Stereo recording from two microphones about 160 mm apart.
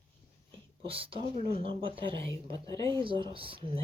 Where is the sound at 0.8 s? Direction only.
35° right (ahead or behind).